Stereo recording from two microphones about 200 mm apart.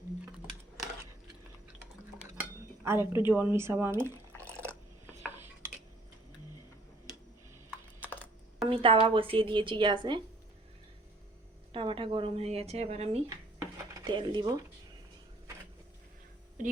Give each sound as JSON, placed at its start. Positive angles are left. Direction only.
{"t": 2.4, "sound": "cutlery", "side_deg": -10}
{"t": 3.2, "sound": "speech", "side_deg": -10}
{"t": 4.4, "sound": "drip", "side_deg": 5}
{"t": 5.0, "sound": "dishes", "side_deg": -10}
{"t": 8.1, "sound": "typing", "side_deg": 10}
{"t": 8.7, "sound": "speech", "side_deg": -25}
{"t": 11.7, "sound": "speech", "side_deg": -25}
{"t": 13.3, "sound": "music", "side_deg": -15}